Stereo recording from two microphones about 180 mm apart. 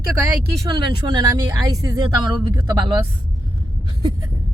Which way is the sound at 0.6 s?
25° right (ahead or behind).